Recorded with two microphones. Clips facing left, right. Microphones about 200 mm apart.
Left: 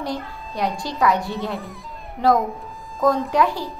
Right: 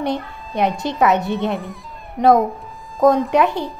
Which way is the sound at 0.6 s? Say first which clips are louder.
Right 5 dB; 20° right (ahead or behind).